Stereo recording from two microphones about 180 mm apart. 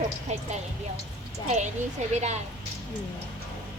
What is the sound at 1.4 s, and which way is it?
Speech, 40° right (ahead or behind).